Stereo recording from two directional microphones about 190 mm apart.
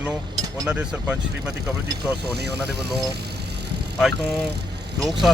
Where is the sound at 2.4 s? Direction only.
60° right (ahead or behind).